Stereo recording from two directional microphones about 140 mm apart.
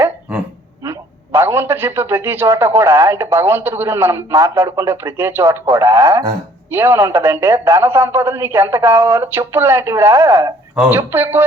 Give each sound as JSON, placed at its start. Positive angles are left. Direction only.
{"t": 0.9, "sound": "a man's voice", "side_deg": -20}